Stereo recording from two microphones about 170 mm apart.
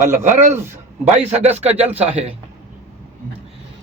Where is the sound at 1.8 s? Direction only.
10° right (ahead or behind).